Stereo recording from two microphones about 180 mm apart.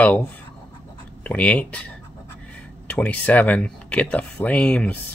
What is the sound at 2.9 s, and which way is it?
Speech, 10° left (ahead or behind).